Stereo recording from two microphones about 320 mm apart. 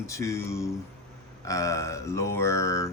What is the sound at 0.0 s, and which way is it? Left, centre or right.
Speech, centre.